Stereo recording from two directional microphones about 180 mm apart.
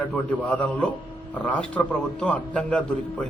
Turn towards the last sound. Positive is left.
turn(degrees=5)  # may be behind; listen again after turning